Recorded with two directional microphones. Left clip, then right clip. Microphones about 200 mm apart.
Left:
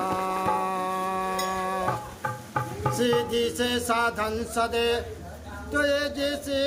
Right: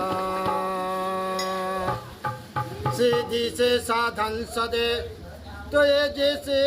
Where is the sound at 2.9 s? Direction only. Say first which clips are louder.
Right 2 dB; centre (ahead or behind).